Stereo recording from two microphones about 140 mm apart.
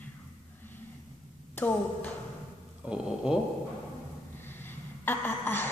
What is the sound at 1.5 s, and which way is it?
Speech, 10° left (ahead or behind).